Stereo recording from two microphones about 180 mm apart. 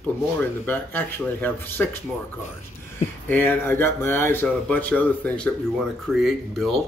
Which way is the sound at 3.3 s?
10° left (ahead or behind).